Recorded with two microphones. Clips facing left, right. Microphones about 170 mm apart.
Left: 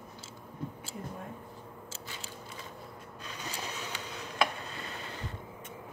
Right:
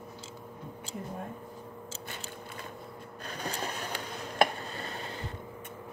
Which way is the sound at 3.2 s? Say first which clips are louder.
Right 5 dB; 55° right (ahead or behind).